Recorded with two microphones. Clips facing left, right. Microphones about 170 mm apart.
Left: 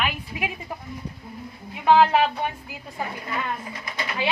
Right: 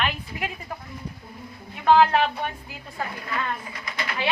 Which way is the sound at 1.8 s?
5° left (ahead or behind).